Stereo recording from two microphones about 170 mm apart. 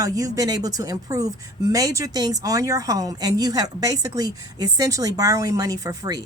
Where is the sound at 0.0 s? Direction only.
20° right (ahead or behind).